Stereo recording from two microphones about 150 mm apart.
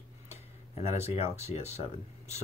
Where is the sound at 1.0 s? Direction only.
45° left (ahead or behind).